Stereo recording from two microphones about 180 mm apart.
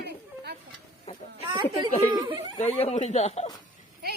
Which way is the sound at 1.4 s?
25° right (ahead or behind).